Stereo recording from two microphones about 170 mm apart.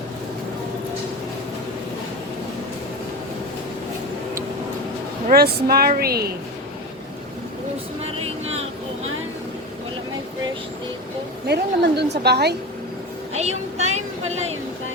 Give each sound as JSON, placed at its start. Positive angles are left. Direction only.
{"t": 5.3, "sound": "speech", "side_deg": -65}
{"t": 11.4, "sound": "a woman's voice", "side_deg": -75}
{"t": 13.3, "sound": "vehicle", "side_deg": -40}